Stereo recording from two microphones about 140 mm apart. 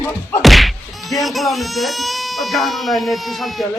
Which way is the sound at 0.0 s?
15° left (ahead or behind).